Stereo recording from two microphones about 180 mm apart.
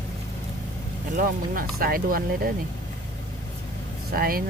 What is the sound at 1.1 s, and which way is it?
Speech, 50° right (ahead or behind).